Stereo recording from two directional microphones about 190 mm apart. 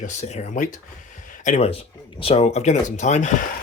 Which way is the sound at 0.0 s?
35° left (ahead or behind).